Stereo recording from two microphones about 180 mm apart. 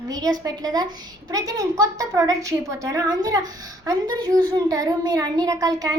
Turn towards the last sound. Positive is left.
turn(degrees=-20)  # may be behind; listen again after turning